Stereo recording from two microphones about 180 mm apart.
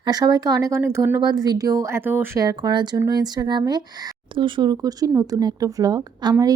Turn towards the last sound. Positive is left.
turn(degrees=-20)  # may be behind; listen again after turning